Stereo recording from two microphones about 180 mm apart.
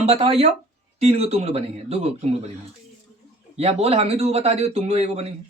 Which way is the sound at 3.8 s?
35° right (ahead or behind).